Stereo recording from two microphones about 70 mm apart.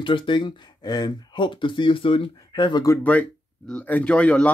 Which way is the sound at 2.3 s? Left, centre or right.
Left.